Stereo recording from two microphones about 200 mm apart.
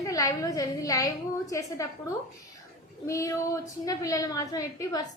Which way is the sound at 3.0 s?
15° left (ahead or behind).